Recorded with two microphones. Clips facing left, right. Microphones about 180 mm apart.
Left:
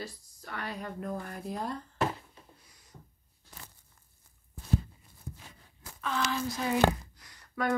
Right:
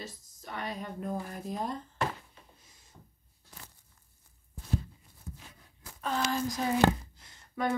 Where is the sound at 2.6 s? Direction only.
25° right (ahead or behind).